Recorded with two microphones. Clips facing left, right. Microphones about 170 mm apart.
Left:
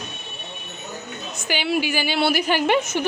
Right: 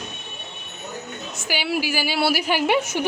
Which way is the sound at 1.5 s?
5° right (ahead or behind).